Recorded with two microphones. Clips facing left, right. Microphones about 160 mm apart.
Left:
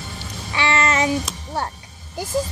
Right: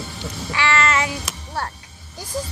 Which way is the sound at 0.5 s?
20° left (ahead or behind).